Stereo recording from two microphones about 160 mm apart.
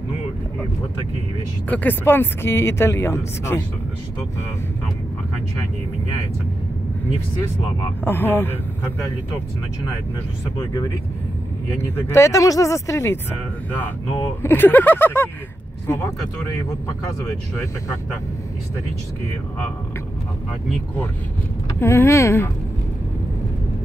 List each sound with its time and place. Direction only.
1.7 s speech: 10° left (ahead or behind)
8.0 s speech: 15° left (ahead or behind)
11.8 s speech: 15° left (ahead or behind)
21.7 s speech: 15° left (ahead or behind)